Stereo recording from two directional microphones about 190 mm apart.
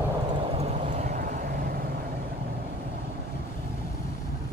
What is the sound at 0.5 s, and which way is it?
Vehicle, 35° right (ahead or behind).